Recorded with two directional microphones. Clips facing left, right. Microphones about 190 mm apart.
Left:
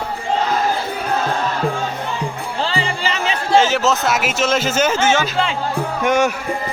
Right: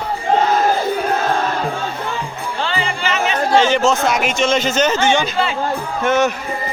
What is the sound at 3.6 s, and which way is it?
Speech, 5° left (ahead or behind).